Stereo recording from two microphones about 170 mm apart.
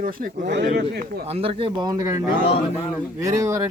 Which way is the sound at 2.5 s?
30° left (ahead or behind).